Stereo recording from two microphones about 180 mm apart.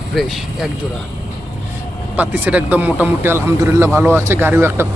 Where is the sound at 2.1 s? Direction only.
10° right (ahead or behind).